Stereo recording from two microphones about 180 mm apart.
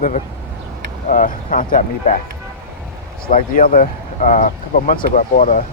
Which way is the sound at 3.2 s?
50° left (ahead or behind).